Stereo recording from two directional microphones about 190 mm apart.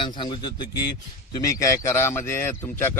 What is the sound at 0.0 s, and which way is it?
A man's voice, 25° left (ahead or behind).